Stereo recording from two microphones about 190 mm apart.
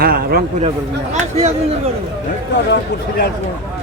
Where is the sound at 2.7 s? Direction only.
55° left (ahead or behind).